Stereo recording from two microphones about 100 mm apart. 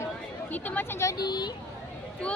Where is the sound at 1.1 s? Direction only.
45° left (ahead or behind).